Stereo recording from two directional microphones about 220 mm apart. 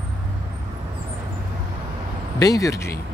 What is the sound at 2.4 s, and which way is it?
Speech, 15° left (ahead or behind).